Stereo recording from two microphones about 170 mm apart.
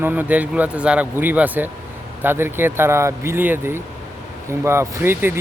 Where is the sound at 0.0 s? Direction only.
10° right (ahead or behind).